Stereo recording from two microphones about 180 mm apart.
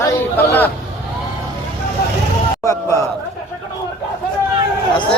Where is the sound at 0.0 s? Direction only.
15° left (ahead or behind).